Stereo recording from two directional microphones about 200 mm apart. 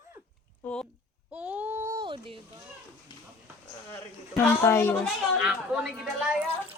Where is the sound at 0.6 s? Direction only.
5° left (ahead or behind).